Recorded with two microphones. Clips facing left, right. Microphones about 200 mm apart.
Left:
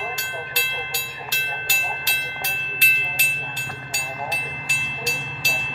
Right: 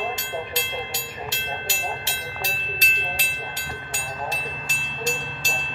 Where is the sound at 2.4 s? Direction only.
45° right (ahead or behind).